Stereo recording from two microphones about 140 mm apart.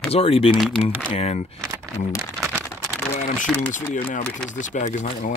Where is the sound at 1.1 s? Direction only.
50° left (ahead or behind).